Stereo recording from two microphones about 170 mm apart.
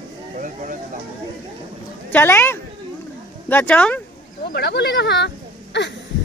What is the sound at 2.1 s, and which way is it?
Speech, 10° left (ahead or behind).